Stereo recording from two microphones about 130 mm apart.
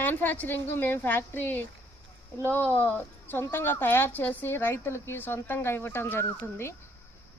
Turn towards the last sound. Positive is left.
turn(degrees=20)  # may be behind; listen again after turning